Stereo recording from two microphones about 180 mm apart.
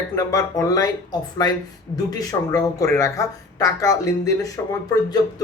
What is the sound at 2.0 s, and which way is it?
Speech, 20° left (ahead or behind).